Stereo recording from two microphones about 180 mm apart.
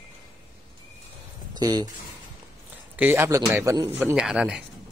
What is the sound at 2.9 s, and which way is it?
A man's voice, 10° right (ahead or behind).